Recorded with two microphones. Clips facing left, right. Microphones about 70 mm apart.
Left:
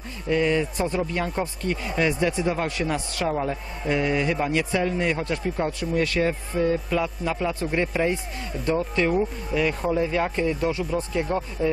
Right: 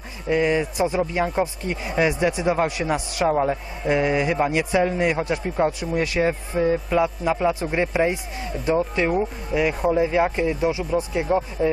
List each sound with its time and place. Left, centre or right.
0.3 s speech: centre
8.5 s speech: centre
8.7 s speech: centre